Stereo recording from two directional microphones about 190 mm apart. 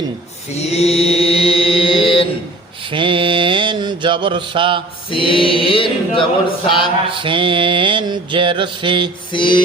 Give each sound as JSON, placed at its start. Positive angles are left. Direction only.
{"t": 0.6, "sound": "chant", "side_deg": 35}
{"t": 2.9, "sound": "mantra", "side_deg": -25}
{"t": 5.1, "sound": "choir", "side_deg": 25}
{"t": 7.1, "sound": "mantra", "side_deg": -25}
{"t": 9.3, "sound": "choir", "side_deg": 25}